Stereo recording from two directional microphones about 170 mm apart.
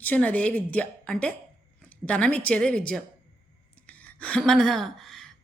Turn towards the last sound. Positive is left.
turn(degrees=0)  # may be behind; listen again after turning